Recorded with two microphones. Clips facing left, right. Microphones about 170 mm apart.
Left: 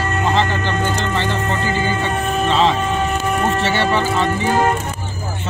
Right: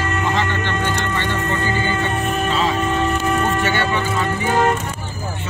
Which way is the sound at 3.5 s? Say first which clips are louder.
Left 2 dB; 30° left (ahead or behind).